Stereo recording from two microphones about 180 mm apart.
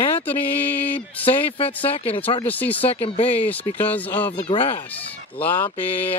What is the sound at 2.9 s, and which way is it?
Speech, 35° left (ahead or behind).